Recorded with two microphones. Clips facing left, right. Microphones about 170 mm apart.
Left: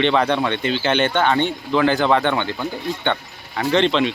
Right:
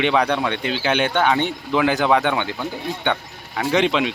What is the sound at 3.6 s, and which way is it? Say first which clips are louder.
Speech: left 1 dB; 5° right (ahead or behind).